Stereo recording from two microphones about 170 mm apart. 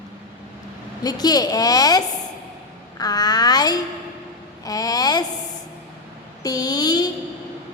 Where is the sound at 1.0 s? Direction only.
20° left (ahead or behind).